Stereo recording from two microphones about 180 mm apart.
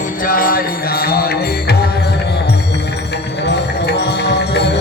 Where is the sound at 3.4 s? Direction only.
70° left (ahead or behind).